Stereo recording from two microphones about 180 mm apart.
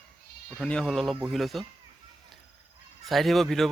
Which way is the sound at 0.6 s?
5° left (ahead or behind).